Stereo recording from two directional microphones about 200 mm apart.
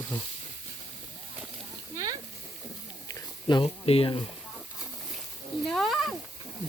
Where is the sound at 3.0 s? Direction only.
20° left (ahead or behind).